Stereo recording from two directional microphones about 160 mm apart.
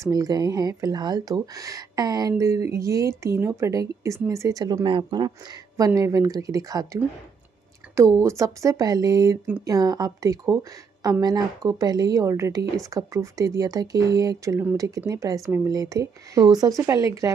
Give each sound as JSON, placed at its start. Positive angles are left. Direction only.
{"t": 0.0, "sound": "a woman's voice", "side_deg": -20}